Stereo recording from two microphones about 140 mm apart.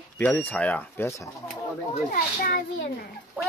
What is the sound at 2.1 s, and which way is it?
Speech, 90° left.